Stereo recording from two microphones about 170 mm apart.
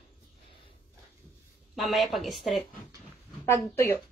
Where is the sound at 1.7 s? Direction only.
Centre (ahead or behind).